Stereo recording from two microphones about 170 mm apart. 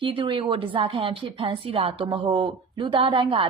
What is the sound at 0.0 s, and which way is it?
A woman's voice, 30° right (ahead or behind).